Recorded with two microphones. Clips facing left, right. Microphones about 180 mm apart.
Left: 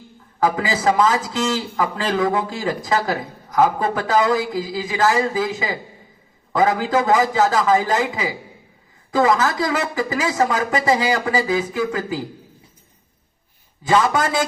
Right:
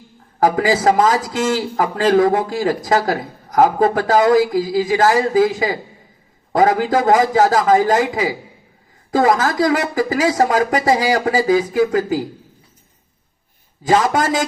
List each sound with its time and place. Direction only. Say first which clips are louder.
0.3 s a man's voice: right 5 dB; 45° right (ahead or behind)
13.8 s a man's voice: right 2 dB; 45° right (ahead or behind)